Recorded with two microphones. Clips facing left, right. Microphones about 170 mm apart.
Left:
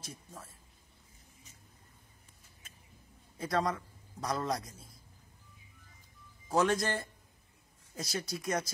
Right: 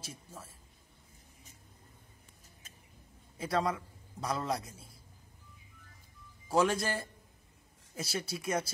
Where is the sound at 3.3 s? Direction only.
25° right (ahead or behind).